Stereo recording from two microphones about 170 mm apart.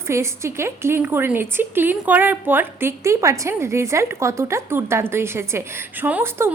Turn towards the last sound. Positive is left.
turn(degrees=-15)  # may be behind; listen again after turning